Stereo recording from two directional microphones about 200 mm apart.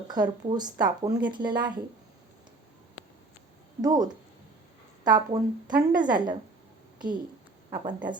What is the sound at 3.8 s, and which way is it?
Speech, 20° right (ahead or behind).